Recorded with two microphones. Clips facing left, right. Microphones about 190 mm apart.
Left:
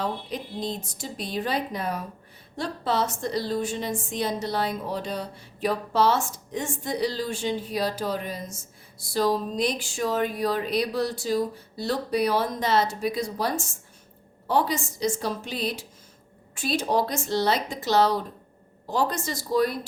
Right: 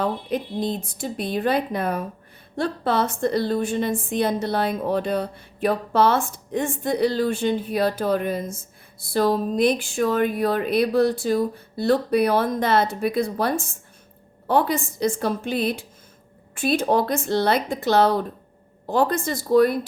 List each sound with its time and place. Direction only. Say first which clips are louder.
0.0 s a woman's voice: right 6 dB; 55° right (ahead or behind)